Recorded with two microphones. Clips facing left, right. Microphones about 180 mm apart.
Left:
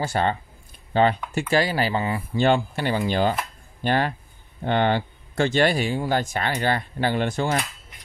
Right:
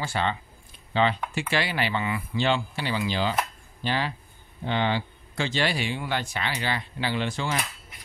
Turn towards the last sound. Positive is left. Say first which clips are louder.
# left 5 dB
turn(degrees=50)  # may be behind; listen again after turning